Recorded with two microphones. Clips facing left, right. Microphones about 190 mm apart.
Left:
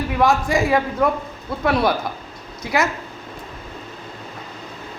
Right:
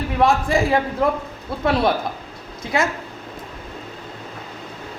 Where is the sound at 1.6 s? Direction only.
25° right (ahead or behind).